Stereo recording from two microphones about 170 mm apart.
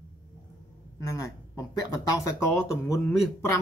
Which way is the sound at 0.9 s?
20° left (ahead or behind).